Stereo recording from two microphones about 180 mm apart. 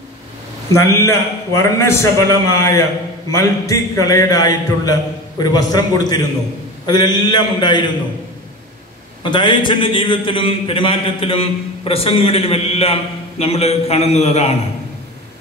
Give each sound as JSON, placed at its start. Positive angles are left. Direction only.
{"t": 0.7, "sound": "a man's voice", "side_deg": 15}
{"t": 9.2, "sound": "a man's voice", "side_deg": 25}